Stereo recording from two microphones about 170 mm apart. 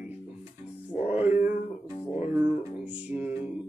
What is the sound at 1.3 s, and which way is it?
Music, 50° left (ahead or behind).